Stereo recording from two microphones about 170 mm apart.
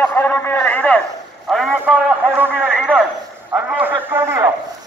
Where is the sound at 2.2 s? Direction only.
10° right (ahead or behind).